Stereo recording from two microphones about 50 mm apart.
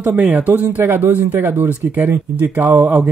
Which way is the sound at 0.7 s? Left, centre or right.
Right.